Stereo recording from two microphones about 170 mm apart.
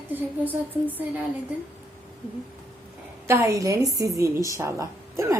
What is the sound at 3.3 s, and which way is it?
A woman's voice, 15° right (ahead or behind).